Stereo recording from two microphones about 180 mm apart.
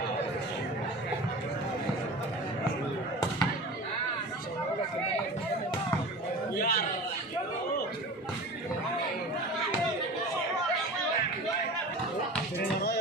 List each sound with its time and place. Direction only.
6.6 s music: 55° left (ahead or behind)